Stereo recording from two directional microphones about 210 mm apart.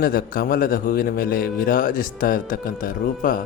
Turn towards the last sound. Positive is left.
turn(degrees=40)  # may be behind; listen again after turning